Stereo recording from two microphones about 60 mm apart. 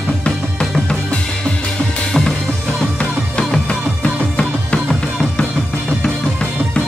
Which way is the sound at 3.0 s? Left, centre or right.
Centre.